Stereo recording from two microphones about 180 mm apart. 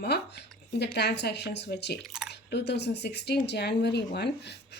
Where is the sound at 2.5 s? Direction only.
70° left (ahead or behind).